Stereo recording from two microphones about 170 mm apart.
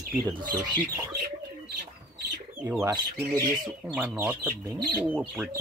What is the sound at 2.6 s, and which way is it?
Speech, 10° right (ahead or behind).